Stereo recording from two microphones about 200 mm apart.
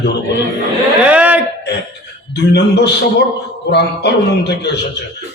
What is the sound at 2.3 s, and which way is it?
A man's voice, 55° left (ahead or behind).